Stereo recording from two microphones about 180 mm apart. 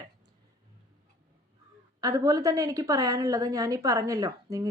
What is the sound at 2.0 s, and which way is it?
A woman's voice, 20° right (ahead or behind).